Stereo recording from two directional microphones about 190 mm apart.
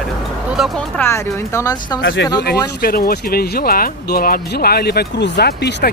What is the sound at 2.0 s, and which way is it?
Speech, 75° left (ahead or behind).